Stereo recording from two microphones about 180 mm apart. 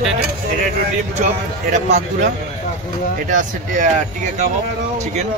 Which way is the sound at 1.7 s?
40° right (ahead or behind).